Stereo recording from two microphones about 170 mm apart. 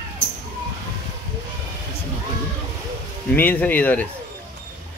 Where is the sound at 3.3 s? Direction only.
10° left (ahead or behind).